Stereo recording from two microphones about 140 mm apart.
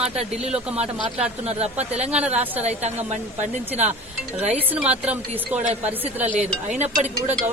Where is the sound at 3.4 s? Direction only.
55° right (ahead or behind).